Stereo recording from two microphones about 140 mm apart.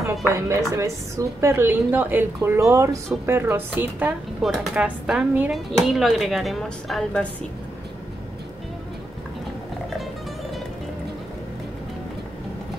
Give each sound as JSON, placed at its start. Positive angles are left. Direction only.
{"t": 0.3, "sound": "a woman's voice", "side_deg": -20}
{"t": 4.4, "sound": "speech", "side_deg": 0}